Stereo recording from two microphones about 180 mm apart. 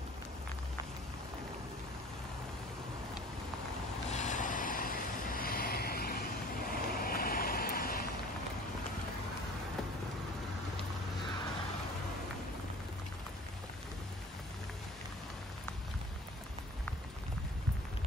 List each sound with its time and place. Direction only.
4.1 s vehicle: 40° left (ahead or behind)
6.7 s boat: 55° left (ahead or behind)